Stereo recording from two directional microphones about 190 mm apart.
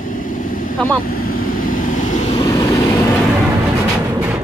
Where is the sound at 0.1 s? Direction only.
45° left (ahead or behind).